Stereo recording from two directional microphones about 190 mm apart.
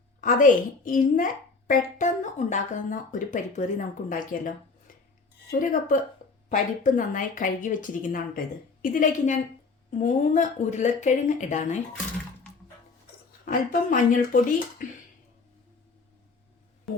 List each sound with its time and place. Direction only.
0.2 s a woman's voice: 40° left (ahead or behind)
13.4 s a woman's voice: 45° left (ahead or behind)